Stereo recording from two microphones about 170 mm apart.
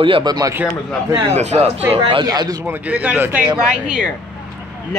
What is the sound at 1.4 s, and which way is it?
Speech, 40° right (ahead or behind).